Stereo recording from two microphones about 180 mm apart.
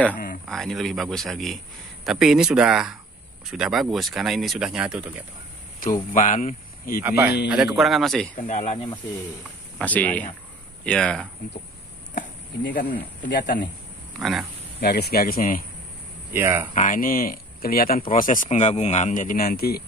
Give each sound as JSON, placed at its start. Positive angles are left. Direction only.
{"t": 0.5, "sound": "speech", "side_deg": 0}
{"t": 6.1, "sound": "speech", "side_deg": 45}
{"t": 7.0, "sound": "speech", "side_deg": -10}
{"t": 8.4, "sound": "speech", "side_deg": 40}
{"t": 9.8, "sound": "speech", "side_deg": 10}
{"t": 12.6, "sound": "speech", "side_deg": 60}
{"t": 14.8, "sound": "speech", "side_deg": 65}
{"t": 16.3, "sound": "speech", "side_deg": -15}
{"t": 16.7, "sound": "speech", "side_deg": 45}